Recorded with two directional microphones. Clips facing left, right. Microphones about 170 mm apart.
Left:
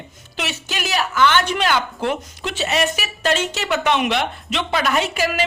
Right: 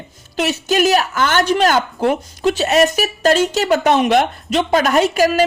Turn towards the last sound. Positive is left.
turn(degrees=-40)  # may be behind; listen again after turning